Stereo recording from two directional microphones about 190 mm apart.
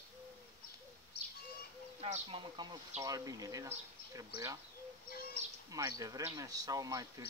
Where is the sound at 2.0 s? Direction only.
30° right (ahead or behind).